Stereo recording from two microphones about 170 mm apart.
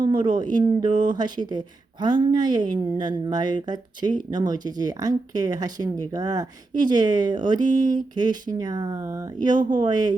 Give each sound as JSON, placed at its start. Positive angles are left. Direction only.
{"t": 0.0, "sound": "speech", "side_deg": -30}